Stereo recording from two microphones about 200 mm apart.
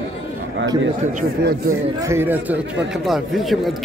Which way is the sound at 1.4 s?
50° right (ahead or behind).